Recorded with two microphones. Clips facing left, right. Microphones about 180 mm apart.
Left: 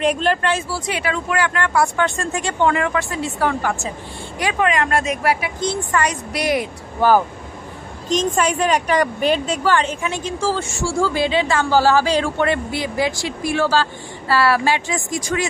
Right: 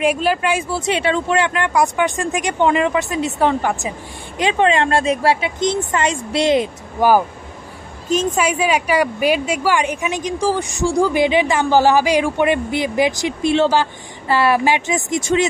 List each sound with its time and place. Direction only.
0.0 s a woman's voice: 5° right (ahead or behind)
0.7 s speech: 25° right (ahead or behind)
7.0 s a woman's voice: 10° right (ahead or behind)